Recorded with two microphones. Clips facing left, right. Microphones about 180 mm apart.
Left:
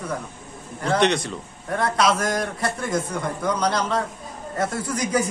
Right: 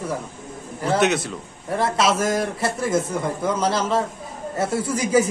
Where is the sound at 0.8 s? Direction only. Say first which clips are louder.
Right 1 dB; 5° right (ahead or behind).